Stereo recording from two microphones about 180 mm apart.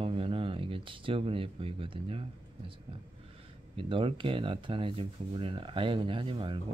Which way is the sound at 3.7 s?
30° right (ahead or behind).